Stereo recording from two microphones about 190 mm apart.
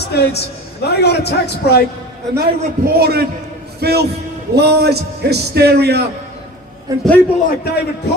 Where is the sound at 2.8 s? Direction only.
55° right (ahead or behind).